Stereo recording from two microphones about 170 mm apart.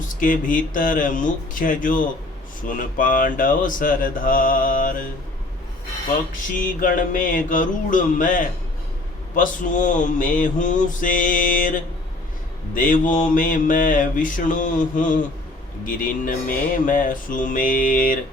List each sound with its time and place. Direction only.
0.2 s mantra: 50° left (ahead or behind)
6.7 s mantra: 55° left (ahead or behind)
12.7 s mantra: 50° left (ahead or behind)